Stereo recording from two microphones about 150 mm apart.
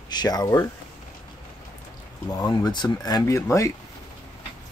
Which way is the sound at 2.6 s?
30° left (ahead or behind).